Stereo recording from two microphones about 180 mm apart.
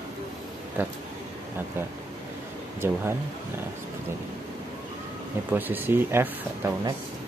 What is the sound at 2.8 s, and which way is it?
Speech, 15° right (ahead or behind).